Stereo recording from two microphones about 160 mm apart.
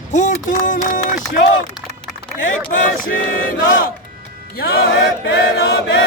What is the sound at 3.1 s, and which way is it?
Chant, 65° left (ahead or behind).